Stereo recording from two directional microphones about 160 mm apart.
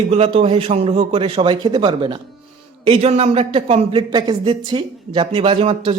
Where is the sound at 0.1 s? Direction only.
40° right (ahead or behind).